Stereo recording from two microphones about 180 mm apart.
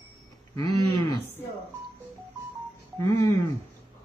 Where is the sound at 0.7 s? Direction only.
20° left (ahead or behind).